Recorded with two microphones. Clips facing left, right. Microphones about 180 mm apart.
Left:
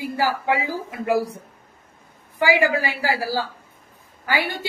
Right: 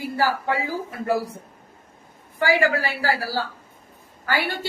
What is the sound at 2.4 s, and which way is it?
Speech, 15° left (ahead or behind).